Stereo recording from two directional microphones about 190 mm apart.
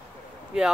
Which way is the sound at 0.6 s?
5° right (ahead or behind).